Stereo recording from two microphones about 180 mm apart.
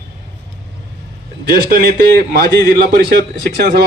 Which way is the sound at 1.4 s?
55° right (ahead or behind).